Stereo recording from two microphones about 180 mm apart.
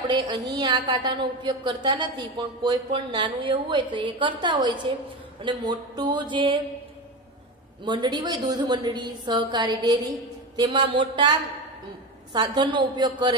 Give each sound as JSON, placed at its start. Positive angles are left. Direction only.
{"t": 0.6, "sound": "a woman's voice", "side_deg": -25}
{"t": 7.8, "sound": "a woman's voice", "side_deg": -25}